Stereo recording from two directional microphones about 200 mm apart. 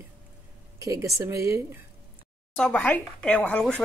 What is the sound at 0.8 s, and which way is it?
Speech, 15° right (ahead or behind).